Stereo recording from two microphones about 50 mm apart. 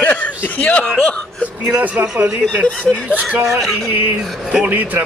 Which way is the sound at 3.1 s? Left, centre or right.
Right.